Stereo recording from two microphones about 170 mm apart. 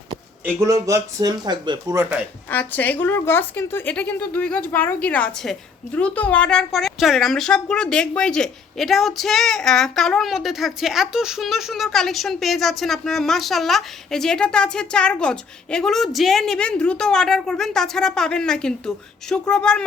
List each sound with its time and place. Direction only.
0.4 s speech: 20° right (ahead or behind)
2.5 s a woman's voice: 10° left (ahead or behind)